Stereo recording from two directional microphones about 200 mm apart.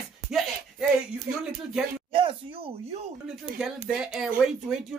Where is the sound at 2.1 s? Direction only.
25° right (ahead or behind).